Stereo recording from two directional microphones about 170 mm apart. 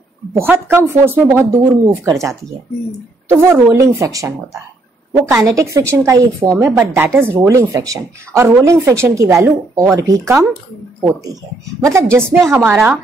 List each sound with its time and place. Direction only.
0.3 s a woman's voice: 15° right (ahead or behind)